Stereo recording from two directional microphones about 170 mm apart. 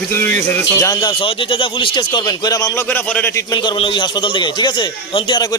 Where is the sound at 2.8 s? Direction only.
10° left (ahead or behind).